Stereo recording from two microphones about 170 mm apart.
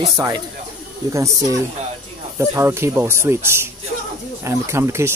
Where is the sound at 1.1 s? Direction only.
15° right (ahead or behind).